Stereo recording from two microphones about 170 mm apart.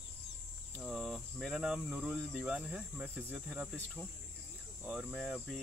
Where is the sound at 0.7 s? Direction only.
Centre (ahead or behind).